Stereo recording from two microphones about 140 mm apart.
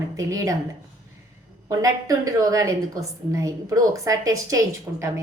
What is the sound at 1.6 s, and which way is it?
A woman's voice, 25° right (ahead or behind).